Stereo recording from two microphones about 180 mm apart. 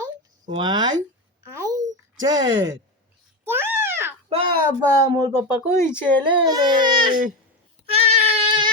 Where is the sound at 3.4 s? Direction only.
10° right (ahead or behind).